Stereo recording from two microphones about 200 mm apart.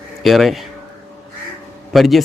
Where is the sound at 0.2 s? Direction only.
Centre (ahead or behind).